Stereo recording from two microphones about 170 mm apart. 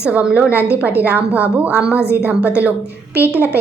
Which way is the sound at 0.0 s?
10° right (ahead or behind).